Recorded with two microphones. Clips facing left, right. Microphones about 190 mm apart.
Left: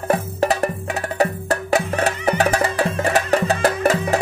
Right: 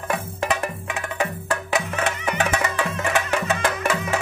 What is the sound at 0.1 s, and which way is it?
Music, 40° left (ahead or behind).